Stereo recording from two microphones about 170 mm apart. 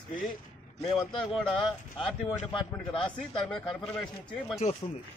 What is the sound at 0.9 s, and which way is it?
Speech, 25° left (ahead or behind).